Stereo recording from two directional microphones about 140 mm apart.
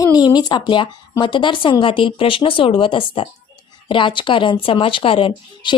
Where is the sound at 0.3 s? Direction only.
30° left (ahead or behind).